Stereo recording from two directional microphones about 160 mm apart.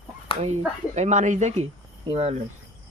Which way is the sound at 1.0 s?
45° right (ahead or behind).